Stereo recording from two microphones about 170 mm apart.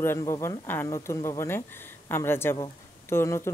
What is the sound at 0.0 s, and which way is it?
Speech, 15° left (ahead or behind).